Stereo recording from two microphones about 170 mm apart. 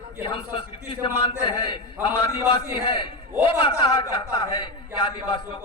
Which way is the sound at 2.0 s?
35° left (ahead or behind).